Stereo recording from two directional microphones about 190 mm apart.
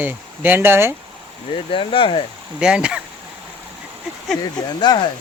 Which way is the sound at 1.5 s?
25° left (ahead or behind).